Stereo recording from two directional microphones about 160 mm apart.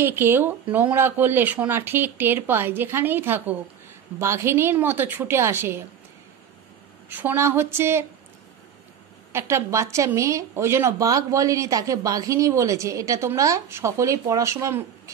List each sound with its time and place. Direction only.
0.0 s speech: 15° right (ahead or behind)
7.1 s speech: 10° right (ahead or behind)
9.3 s a woman's voice: 15° right (ahead or behind)